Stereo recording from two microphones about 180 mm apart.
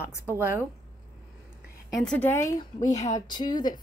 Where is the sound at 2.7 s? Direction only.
40° left (ahead or behind).